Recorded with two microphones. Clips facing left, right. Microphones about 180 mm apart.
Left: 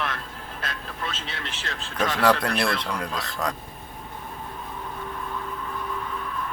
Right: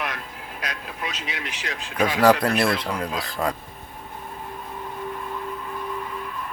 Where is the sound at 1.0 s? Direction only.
15° right (ahead or behind).